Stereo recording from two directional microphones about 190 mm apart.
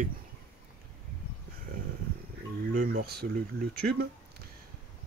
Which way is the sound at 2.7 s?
55° right (ahead or behind).